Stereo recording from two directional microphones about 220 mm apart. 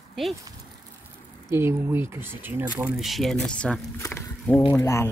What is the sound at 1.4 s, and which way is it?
Speech, 10° right (ahead or behind).